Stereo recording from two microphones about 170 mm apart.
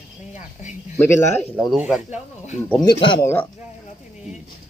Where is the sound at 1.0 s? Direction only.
15° left (ahead or behind).